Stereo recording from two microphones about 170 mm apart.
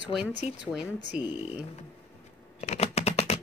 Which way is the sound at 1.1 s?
10° right (ahead or behind).